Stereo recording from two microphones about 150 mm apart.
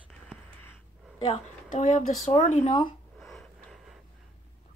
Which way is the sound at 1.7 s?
60° left (ahead or behind).